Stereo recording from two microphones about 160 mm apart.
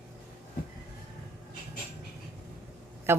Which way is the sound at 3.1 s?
15° right (ahead or behind).